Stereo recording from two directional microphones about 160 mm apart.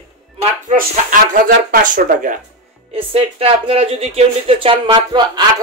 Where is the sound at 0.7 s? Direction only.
60° right (ahead or behind).